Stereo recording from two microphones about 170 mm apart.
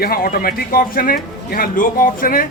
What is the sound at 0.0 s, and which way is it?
A woman's voice, 60° left (ahead or behind).